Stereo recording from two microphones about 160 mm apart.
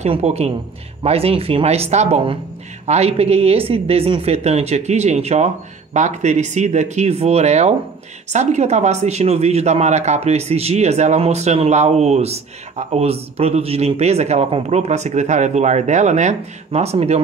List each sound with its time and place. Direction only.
0.0 s speech: 40° right (ahead or behind)